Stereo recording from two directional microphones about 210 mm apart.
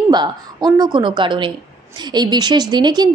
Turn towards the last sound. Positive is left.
turn(degrees=-20)  # may be behind; listen again after turning